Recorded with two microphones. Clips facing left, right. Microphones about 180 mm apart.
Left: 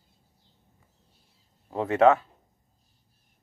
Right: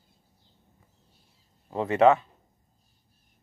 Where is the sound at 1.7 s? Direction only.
Centre (ahead or behind).